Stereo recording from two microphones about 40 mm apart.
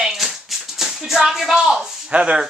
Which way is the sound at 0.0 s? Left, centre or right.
Centre.